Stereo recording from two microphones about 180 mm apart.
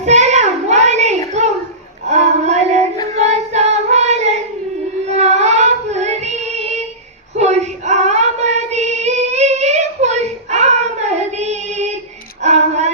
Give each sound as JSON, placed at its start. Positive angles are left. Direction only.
{"t": 0.0, "sound": "child singing", "side_deg": -40}
{"t": 2.0, "sound": "female singing", "side_deg": -40}
{"t": 3.2, "sound": "child singing", "side_deg": -40}
{"t": 12.4, "sound": "female singing", "side_deg": -40}